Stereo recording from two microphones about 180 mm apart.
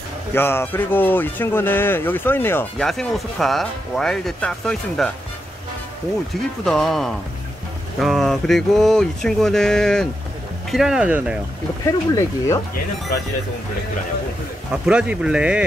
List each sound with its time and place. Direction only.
0.3 s speech: 15° left (ahead or behind)
6.6 s speech: centre (ahead or behind)
11.8 s speech: 20° left (ahead or behind)
14.7 s speech: 5° right (ahead or behind)